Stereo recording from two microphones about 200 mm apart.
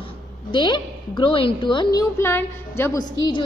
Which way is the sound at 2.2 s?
10° left (ahead or behind).